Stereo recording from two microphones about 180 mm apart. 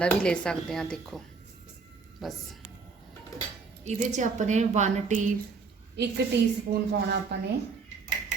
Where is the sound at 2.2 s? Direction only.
Centre (ahead or behind).